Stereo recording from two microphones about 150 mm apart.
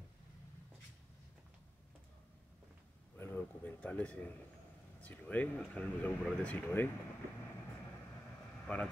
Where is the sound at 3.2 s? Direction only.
15° left (ahead or behind).